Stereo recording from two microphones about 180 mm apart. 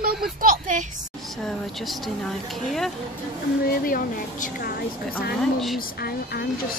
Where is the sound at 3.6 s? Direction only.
55° left (ahead or behind).